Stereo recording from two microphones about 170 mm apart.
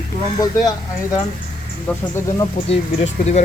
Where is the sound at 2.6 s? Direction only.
40° left (ahead or behind).